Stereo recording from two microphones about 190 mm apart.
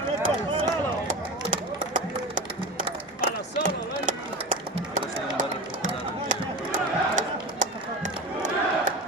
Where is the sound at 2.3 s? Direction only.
35° right (ahead or behind).